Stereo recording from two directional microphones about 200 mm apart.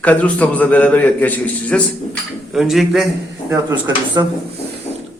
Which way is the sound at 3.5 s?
15° right (ahead or behind).